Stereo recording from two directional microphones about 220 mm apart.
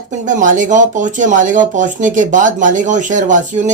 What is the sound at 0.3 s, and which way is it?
Speech, 35° right (ahead or behind).